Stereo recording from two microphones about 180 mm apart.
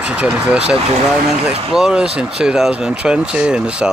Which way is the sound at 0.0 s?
5° right (ahead or behind).